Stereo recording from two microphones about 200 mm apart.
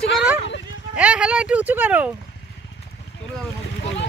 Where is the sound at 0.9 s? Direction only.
5° right (ahead or behind).